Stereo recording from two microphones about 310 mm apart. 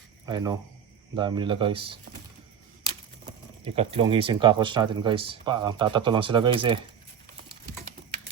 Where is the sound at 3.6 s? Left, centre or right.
Centre.